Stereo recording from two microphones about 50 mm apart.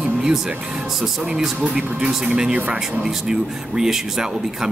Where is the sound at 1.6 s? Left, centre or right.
Right.